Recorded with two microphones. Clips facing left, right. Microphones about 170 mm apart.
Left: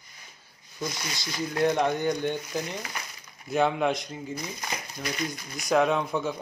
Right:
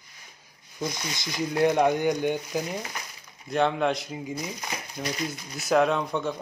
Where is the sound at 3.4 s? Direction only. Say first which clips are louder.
Even; 5° left (ahead or behind).